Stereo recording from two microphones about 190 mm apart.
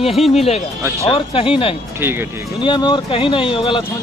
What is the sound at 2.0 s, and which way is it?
Speech, 10° right (ahead or behind).